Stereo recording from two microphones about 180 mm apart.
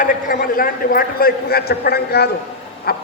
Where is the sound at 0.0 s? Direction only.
50° left (ahead or behind).